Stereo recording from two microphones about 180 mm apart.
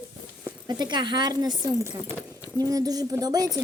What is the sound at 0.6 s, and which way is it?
A woman's voice, 25° right (ahead or behind).